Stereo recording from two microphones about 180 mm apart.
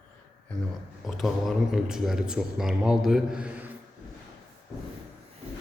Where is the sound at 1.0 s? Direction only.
Centre (ahead or behind).